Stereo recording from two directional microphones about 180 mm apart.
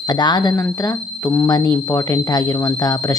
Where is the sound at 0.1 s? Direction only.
25° left (ahead or behind).